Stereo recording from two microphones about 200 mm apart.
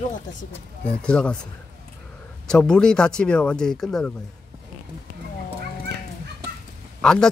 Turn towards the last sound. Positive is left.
turn(degrees=5)  # may be behind; listen again after turning